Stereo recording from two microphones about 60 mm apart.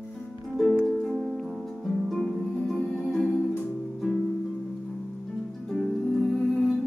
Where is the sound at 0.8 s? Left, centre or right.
Centre.